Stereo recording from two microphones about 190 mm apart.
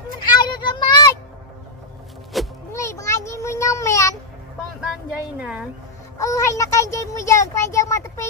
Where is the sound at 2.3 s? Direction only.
Centre (ahead or behind).